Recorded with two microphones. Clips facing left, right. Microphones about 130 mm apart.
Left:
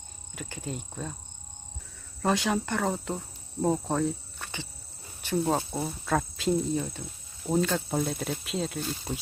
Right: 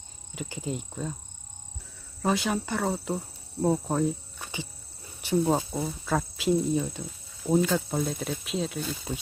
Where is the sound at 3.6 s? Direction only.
10° right (ahead or behind).